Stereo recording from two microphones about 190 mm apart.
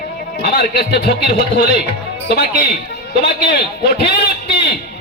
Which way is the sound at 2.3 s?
60° left (ahead or behind).